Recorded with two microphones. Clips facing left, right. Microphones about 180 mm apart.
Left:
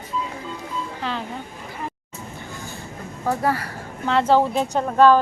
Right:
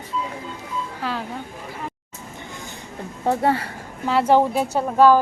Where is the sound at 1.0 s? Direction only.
5° right (ahead or behind).